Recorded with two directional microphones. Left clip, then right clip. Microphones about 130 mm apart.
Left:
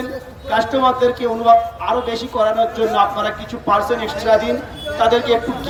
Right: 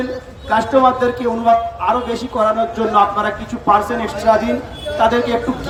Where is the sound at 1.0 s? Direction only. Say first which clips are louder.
Left 1 dB; 15° right (ahead or behind).